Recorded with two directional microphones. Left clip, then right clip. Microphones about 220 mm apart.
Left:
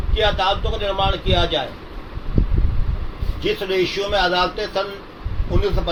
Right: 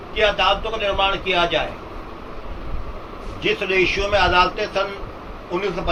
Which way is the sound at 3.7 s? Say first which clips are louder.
Right 2 dB; 20° left (ahead or behind).